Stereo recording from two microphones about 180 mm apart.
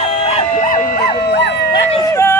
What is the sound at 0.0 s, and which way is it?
Music, 40° left (ahead or behind).